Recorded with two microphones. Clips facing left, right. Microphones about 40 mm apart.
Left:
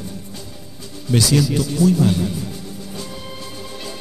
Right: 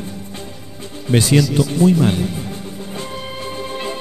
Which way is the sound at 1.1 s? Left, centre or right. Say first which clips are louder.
Right 2 dB; right.